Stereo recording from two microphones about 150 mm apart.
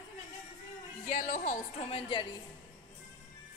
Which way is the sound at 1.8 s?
40° left (ahead or behind).